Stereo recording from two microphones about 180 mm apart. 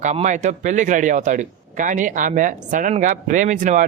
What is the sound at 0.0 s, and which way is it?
A man's voice, 40° right (ahead or behind).